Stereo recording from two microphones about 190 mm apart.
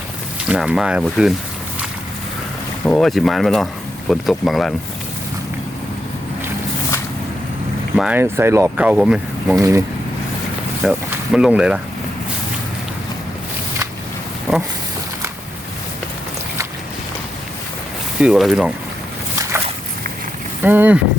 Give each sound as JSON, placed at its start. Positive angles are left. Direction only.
{"t": 0.4, "sound": "speech", "side_deg": -5}
{"t": 2.8, "sound": "speech", "side_deg": 5}
{"t": 7.9, "sound": "speech", "side_deg": -5}
{"t": 9.6, "sound": "speech", "side_deg": -15}
{"t": 10.8, "sound": "speech", "side_deg": -5}
{"t": 18.2, "sound": "speech", "side_deg": 0}
{"t": 20.6, "sound": "speech", "side_deg": -10}